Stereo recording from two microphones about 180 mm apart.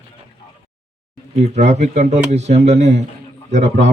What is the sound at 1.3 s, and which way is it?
Speech, 40° right (ahead or behind).